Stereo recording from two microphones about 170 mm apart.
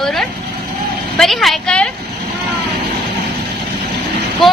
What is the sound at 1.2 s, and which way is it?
Speech, centre (ahead or behind).